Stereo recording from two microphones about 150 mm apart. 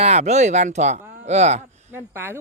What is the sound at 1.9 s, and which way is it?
Speech, 15° right (ahead or behind).